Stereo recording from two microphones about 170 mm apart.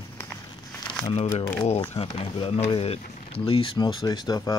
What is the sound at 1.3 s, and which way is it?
Speech, 15° left (ahead or behind).